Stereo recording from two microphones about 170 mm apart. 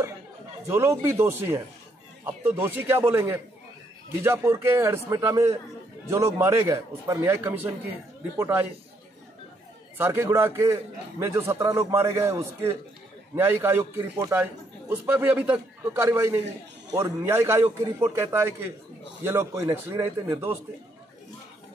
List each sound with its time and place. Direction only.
0.7 s a man's voice: 15° right (ahead or behind)
9.9 s a man's voice: 15° right (ahead or behind)